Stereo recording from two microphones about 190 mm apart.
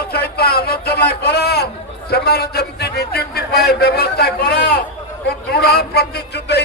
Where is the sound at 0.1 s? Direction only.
55° left (ahead or behind).